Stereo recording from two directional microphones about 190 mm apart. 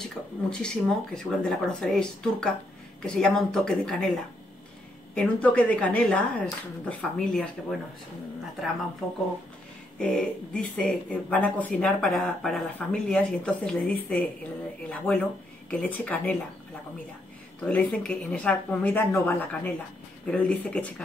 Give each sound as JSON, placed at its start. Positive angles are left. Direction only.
{"t": 0.0, "sound": "speech", "side_deg": 5}
{"t": 5.1, "sound": "a woman's voice", "side_deg": 5}
{"t": 9.0, "sound": "a woman's voice", "side_deg": 0}
{"t": 17.6, "sound": "a woman's voice", "side_deg": 5}